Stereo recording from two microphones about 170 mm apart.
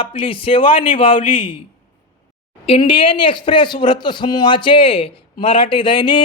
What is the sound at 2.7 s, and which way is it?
A man's voice, 30° left (ahead or behind).